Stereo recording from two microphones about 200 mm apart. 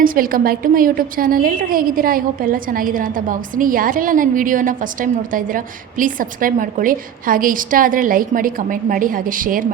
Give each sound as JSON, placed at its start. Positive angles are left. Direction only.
{"t": 0.0, "sound": "a woman's voice", "side_deg": -45}